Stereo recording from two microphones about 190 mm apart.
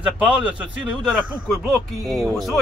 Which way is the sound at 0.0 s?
5° right (ahead or behind).